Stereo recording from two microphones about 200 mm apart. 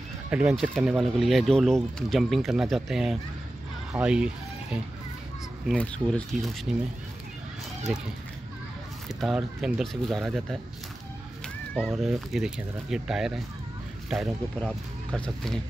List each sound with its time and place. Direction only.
0.3 s speech: 5° right (ahead or behind)
7.9 s speech: 5° right (ahead or behind)
9.2 s speech: centre (ahead or behind)